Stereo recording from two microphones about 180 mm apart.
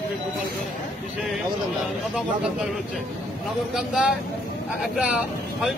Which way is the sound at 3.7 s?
5° right (ahead or behind).